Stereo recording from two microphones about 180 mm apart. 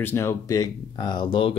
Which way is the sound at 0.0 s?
15° left (ahead or behind).